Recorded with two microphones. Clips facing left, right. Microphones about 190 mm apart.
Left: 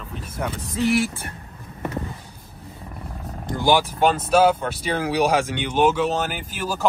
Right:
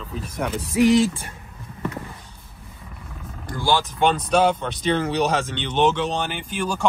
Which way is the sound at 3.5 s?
20° left (ahead or behind).